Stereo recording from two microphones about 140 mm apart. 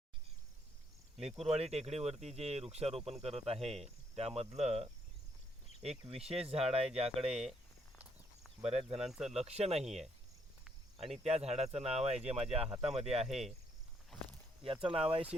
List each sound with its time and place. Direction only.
1.1 s speech: 50° right (ahead or behind)
8.6 s speech: 45° right (ahead or behind)
9.0 s speech: 5° right (ahead or behind)
9.3 s speech: 50° right (ahead or behind)
11.1 s speech: 50° right (ahead or behind)
13.2 s speech: centre (ahead or behind)
14.6 s speech: 40° right (ahead or behind)